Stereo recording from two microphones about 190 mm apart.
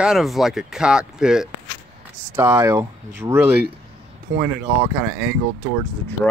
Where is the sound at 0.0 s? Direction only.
Centre (ahead or behind).